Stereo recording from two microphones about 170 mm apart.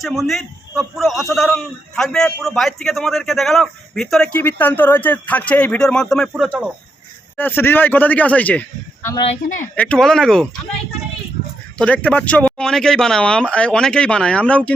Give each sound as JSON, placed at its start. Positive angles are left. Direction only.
{"t": 0.0, "sound": "a man's voice", "side_deg": 0}
{"t": 7.3, "sound": "a man's voice", "side_deg": 10}
{"t": 9.3, "sound": "a woman's voice", "side_deg": 45}
{"t": 9.7, "sound": "a man's voice", "side_deg": 5}
{"t": 11.8, "sound": "a man's voice", "side_deg": 10}